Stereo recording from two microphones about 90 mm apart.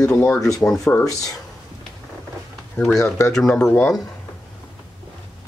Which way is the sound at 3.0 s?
35° left (ahead or behind).